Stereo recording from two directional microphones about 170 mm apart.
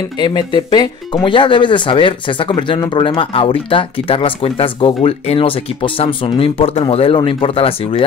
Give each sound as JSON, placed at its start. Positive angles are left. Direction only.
{"t": 0.2, "sound": "speech", "side_deg": 25}